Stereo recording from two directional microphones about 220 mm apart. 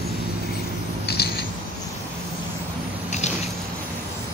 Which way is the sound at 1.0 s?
45° left (ahead or behind).